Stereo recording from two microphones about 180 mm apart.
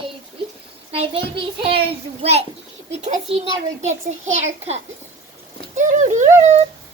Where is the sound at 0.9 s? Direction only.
30° right (ahead or behind).